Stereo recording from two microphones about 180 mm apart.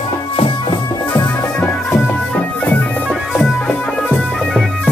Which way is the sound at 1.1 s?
15° left (ahead or behind).